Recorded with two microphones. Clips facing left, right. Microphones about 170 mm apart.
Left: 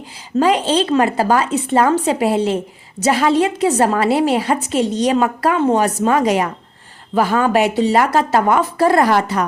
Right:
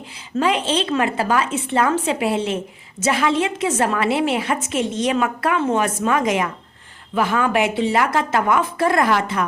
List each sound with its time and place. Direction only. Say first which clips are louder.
0.3 s a woman's voice: left 5 dB; 35° left (ahead or behind)